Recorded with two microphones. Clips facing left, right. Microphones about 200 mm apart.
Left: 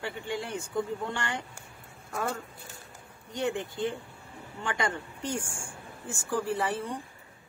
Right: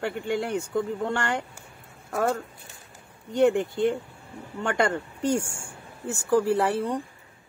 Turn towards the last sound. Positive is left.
turn(degrees=-65)  # may be behind; listen again after turning